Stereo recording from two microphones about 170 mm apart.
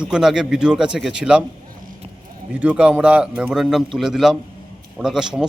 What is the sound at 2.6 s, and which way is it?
A man's voice, 10° right (ahead or behind).